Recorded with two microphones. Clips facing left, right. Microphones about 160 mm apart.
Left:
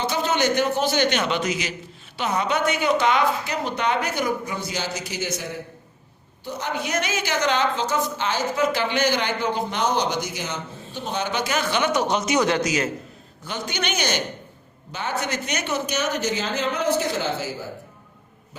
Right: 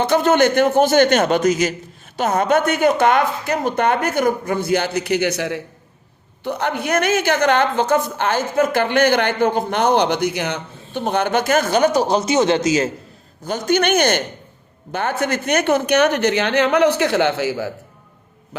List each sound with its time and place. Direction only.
0.0 s speech: 55° right (ahead or behind); by 5.6 s 75° right (ahead or behind)
6.4 s a woman's voice: 60° right (ahead or behind); by 12.9 s 25° right (ahead or behind)
13.4 s speech: 45° right (ahead or behind); by 17.7 s 70° right (ahead or behind)